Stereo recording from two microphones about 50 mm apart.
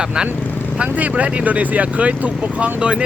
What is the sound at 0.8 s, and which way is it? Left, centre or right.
Speech, right.